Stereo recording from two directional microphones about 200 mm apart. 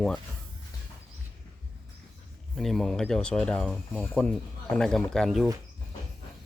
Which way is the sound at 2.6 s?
Centre (ahead or behind).